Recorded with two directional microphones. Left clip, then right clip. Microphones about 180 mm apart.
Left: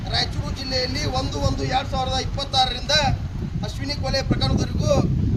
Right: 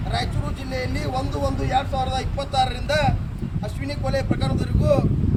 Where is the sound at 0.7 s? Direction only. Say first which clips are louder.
Left 3 dB; 5° left (ahead or behind).